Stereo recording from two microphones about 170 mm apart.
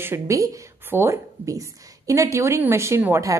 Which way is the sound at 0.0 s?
15° right (ahead or behind).